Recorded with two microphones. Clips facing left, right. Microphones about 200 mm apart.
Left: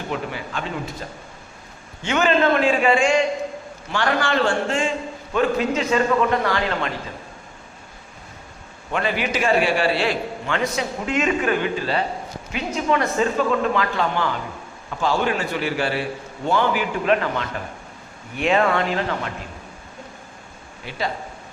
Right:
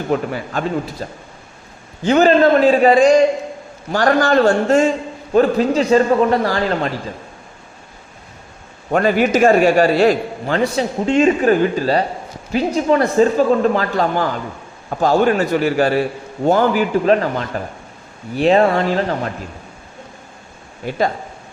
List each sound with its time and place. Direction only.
0.1 s a man's voice: 45° right (ahead or behind)
8.9 s a man's voice: 45° right (ahead or behind)
20.8 s a man's voice: 45° right (ahead or behind)